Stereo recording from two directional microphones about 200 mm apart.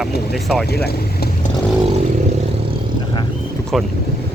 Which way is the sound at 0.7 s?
55° left (ahead or behind).